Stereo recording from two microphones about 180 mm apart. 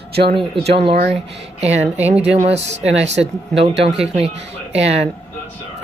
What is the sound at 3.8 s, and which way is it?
Speech, 35° right (ahead or behind).